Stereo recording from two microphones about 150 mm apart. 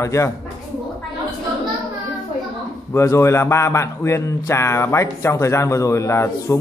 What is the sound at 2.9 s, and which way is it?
Speech, 20° left (ahead or behind).